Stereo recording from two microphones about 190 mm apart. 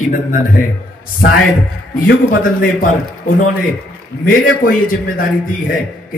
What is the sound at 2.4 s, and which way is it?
Speech, 45° left (ahead or behind).